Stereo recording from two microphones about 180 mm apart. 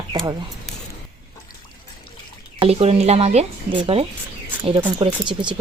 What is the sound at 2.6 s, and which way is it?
Speech, 35° right (ahead or behind).